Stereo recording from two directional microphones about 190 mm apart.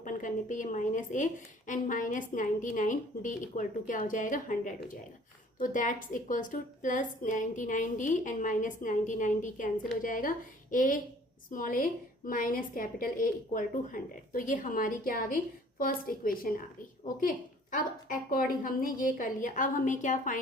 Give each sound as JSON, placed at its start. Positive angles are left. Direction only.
{"t": 0.0, "sound": "a woman's voice", "side_deg": 40}